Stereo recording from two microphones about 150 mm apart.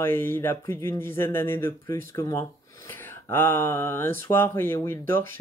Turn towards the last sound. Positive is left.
turn(degrees=15)  # may be behind; listen again after turning